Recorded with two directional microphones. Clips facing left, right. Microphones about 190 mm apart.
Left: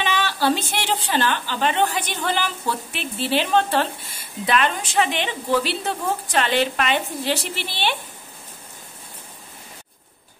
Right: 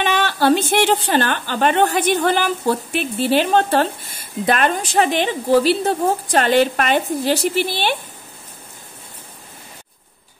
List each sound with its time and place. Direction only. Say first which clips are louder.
0.0 s a woman's voice: right 4 dB; 55° right (ahead or behind)